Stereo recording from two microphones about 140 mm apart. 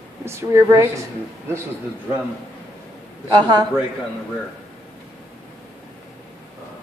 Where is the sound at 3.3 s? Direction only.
35° right (ahead or behind).